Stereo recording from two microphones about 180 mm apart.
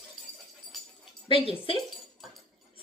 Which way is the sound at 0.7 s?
Centre (ahead or behind).